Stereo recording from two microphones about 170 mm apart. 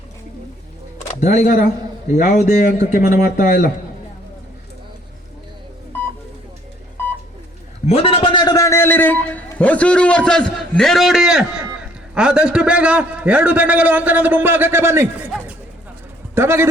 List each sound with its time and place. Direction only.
1.0 s speech: 45° left (ahead or behind)
7.9 s a man's voice: 35° left (ahead or behind); by 16.6 s 15° right (ahead or behind)